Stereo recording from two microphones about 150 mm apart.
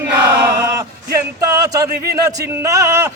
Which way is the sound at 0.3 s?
20° right (ahead or behind).